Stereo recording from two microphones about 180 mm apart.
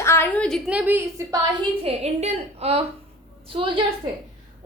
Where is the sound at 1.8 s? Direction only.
35° right (ahead or behind).